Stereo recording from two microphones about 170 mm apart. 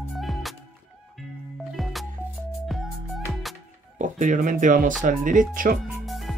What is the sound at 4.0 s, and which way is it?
Speech, 50° right (ahead or behind).